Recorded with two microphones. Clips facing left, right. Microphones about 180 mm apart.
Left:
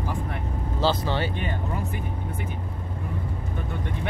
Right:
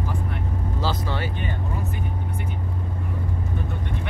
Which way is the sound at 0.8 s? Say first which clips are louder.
Left 4 dB; 25° left (ahead or behind).